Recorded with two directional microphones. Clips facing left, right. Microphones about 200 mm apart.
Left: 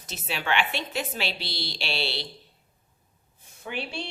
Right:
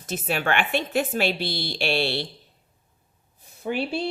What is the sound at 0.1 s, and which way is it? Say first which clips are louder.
A woman's voice: right 4 dB; 50° right (ahead or behind).